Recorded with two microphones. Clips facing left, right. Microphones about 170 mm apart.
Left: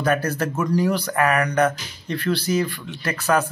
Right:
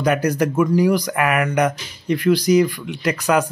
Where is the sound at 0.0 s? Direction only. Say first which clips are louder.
Right 4 dB; 15° right (ahead or behind).